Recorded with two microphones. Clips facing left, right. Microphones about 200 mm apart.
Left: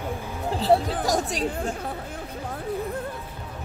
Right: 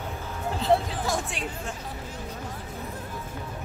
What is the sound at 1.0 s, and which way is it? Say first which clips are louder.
Speech: left 5 dB; 40° left (ahead or behind).